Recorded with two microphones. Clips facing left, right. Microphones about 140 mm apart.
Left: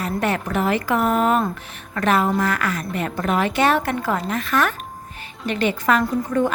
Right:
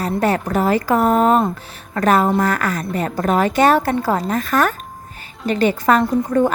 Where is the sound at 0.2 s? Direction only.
35° right (ahead or behind).